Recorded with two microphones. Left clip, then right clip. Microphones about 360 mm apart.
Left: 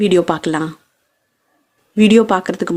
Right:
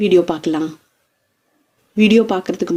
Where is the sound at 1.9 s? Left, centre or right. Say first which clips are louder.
Left 2 dB; left.